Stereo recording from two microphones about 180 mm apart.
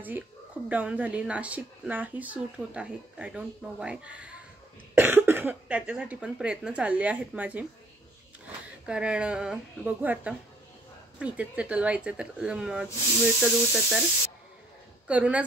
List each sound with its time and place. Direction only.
0.7 s speech: 10° right (ahead or behind)
8.8 s speech: 5° right (ahead or behind)
15.0 s speech: 5° right (ahead or behind)